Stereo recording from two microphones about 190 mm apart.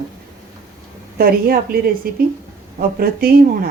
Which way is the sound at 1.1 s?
50° right (ahead or behind).